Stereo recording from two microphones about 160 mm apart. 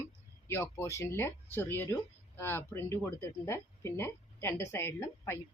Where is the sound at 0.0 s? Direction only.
15° left (ahead or behind).